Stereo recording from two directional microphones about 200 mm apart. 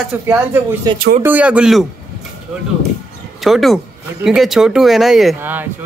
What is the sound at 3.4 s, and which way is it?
Speech, centre (ahead or behind).